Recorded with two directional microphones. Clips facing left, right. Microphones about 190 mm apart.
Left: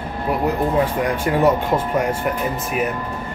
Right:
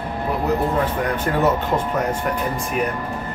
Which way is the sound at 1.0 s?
10° left (ahead or behind).